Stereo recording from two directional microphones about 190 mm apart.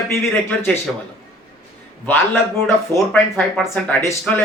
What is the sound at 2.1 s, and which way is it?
Speech, 10° left (ahead or behind).